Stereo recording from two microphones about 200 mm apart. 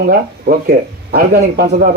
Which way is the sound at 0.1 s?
50° right (ahead or behind).